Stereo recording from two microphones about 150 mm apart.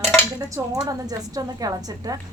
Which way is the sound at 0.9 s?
25° right (ahead or behind).